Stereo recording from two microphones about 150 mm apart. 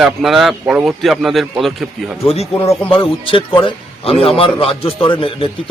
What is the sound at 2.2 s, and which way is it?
Speech, 40° left (ahead or behind).